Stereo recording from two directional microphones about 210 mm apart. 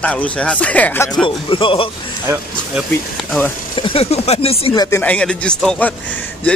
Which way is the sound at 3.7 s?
25° left (ahead or behind).